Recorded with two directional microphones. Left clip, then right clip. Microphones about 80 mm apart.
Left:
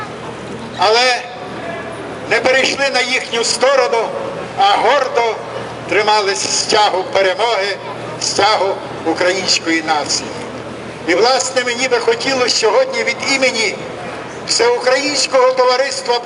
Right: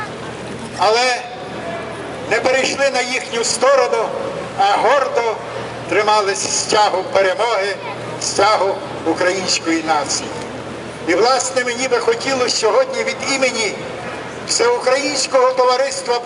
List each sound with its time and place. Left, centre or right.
0.8 s a man's voice: left
2.3 s a man's voice: left